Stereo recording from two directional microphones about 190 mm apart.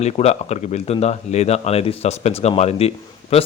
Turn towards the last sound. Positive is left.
turn(degrees=30)  # may be behind; listen again after turning